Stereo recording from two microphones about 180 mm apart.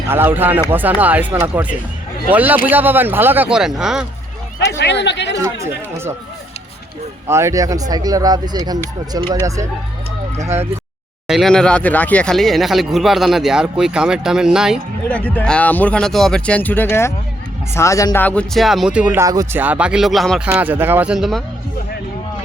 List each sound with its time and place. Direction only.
0.1 s speech: 10° right (ahead or behind)
4.8 s speech: 75° left (ahead or behind)
5.4 s speech: 15° right (ahead or behind)
7.3 s speech: 15° right (ahead or behind)
10.3 s speech: 35° right (ahead or behind)
11.3 s speech: centre (ahead or behind)
15.0 s speech: 10° left (ahead or behind)